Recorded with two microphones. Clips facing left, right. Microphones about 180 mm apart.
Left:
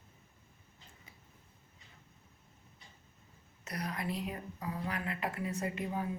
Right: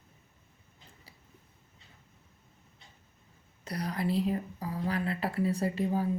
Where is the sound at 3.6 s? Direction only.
30° right (ahead or behind).